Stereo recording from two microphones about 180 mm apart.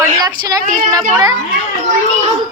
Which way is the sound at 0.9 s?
20° right (ahead or behind).